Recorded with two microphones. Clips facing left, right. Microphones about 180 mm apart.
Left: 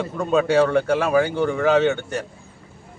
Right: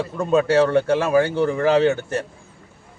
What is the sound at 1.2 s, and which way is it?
Speech, 30° right (ahead or behind).